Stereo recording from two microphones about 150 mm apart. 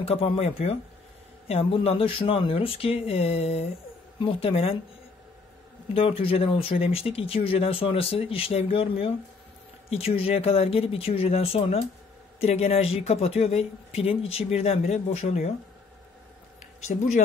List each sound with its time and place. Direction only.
0.0 s speech: 40° left (ahead or behind)
5.9 s speech: 40° left (ahead or behind)
16.8 s speech: 60° left (ahead or behind)